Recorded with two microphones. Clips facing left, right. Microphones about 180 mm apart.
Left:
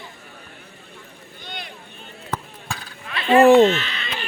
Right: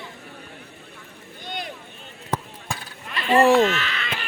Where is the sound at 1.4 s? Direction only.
45° right (ahead or behind).